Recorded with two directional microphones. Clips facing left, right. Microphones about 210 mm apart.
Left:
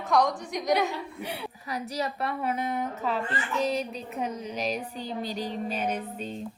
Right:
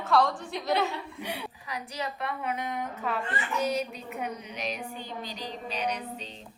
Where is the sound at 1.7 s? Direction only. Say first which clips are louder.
Left 5 dB; 40° left (ahead or behind).